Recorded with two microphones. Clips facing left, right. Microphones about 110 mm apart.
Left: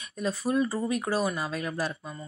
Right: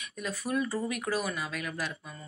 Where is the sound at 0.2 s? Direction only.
30° left (ahead or behind).